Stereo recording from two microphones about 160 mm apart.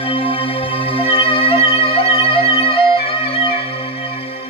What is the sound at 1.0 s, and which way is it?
Music, 35° left (ahead or behind).